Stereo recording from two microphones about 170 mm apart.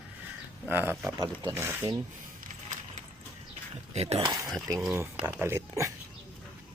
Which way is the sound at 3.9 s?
40° right (ahead or behind).